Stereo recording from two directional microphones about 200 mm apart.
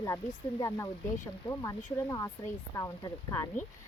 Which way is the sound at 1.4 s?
15° left (ahead or behind).